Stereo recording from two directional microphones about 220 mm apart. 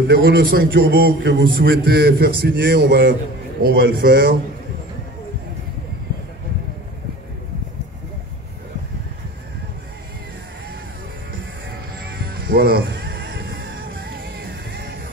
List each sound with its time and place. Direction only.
0.1 s a man's voice: 45° right (ahead or behind)
12.0 s music: 45° right (ahead or behind)